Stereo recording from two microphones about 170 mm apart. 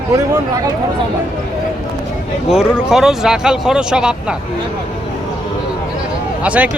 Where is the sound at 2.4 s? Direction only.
5° right (ahead or behind).